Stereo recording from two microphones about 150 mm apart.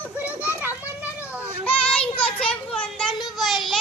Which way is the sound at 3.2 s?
Centre (ahead or behind).